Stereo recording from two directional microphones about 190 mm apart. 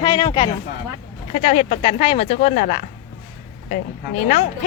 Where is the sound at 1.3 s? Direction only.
30° left (ahead or behind).